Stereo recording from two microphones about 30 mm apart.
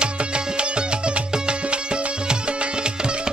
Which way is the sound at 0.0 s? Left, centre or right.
Right.